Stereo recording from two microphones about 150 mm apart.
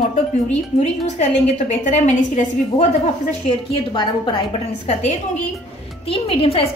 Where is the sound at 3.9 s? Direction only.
35° left (ahead or behind).